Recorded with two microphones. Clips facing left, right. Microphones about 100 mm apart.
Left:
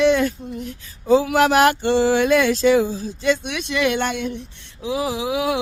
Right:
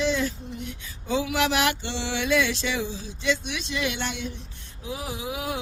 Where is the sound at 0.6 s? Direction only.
40° left (ahead or behind).